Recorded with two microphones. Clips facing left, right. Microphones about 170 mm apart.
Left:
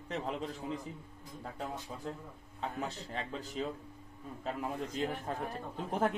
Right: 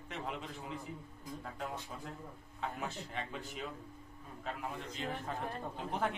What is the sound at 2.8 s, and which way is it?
Speech, 35° left (ahead or behind).